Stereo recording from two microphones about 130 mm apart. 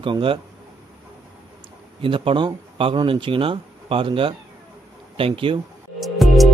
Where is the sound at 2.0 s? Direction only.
45° right (ahead or behind).